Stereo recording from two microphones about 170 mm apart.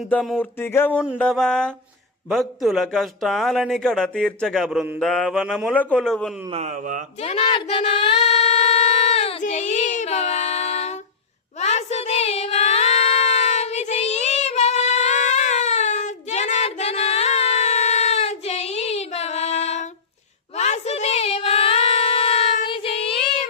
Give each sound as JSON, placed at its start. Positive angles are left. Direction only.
{"t": 0.1, "sound": "speech", "side_deg": 10}
{"t": 5.7, "sound": "speech", "side_deg": 10}
{"t": 6.5, "sound": "a sound", "side_deg": -40}
{"t": 7.2, "sound": "a woman's voice", "side_deg": 35}
{"t": 9.0, "sound": "child singing", "side_deg": 40}
{"t": 11.6, "sound": "a sound", "side_deg": 40}